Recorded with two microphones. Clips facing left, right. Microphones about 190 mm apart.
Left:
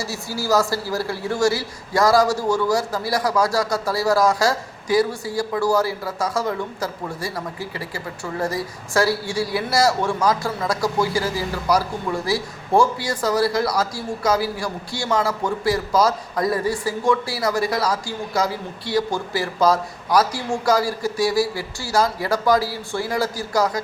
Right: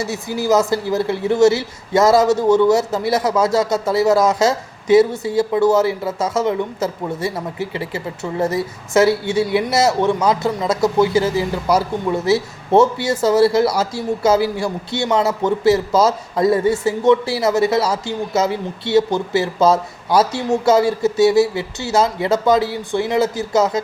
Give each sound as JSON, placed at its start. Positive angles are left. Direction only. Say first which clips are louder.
{"t": 0.0, "sound": "speech", "louder": "right 6 dB", "side_deg": -20}